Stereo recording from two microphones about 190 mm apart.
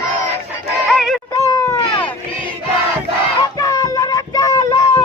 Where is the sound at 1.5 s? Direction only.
15° left (ahead or behind).